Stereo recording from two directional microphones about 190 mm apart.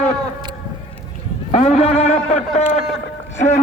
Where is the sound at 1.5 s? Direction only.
35° left (ahead or behind).